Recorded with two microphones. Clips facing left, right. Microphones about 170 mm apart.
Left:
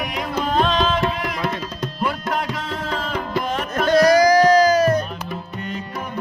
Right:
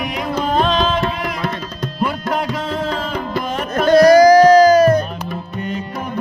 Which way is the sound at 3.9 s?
35° right (ahead or behind).